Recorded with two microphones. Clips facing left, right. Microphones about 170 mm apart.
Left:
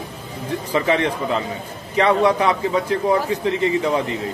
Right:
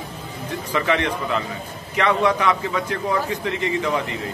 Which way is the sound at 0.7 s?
30° left (ahead or behind).